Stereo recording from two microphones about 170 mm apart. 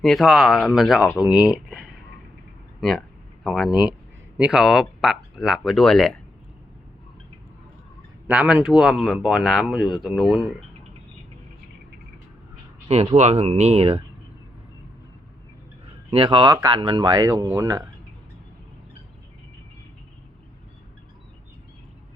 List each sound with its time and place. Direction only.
0.0 s speech: centre (ahead or behind)
3.4 s speech: centre (ahead or behind)
8.3 s speech: 5° right (ahead or behind)
12.9 s speech: 40° right (ahead or behind)
16.0 s speech: 30° right (ahead or behind)